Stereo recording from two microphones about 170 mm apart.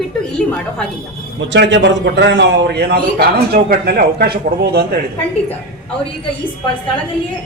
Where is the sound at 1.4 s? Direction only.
90° right; by 4.9 s 70° right (ahead or behind).